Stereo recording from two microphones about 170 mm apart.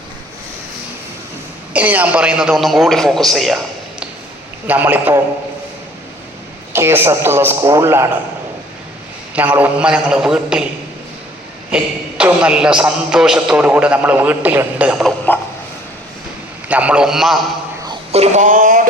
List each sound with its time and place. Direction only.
1.7 s a man's voice: 10° right (ahead or behind)
4.6 s a man's voice: 10° right (ahead or behind)
6.7 s a man's voice: 15° right (ahead or behind)
9.3 s a man's voice: 10° right (ahead or behind)
11.7 s a man's voice: 5° right (ahead or behind)
16.6 s a man's voice: 10° right (ahead or behind)
18.1 s speech: 40° right (ahead or behind)